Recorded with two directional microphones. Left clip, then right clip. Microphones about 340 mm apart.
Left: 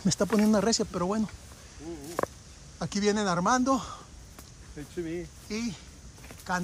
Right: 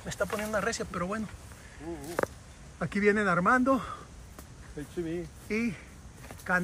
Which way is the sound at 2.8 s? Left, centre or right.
Centre.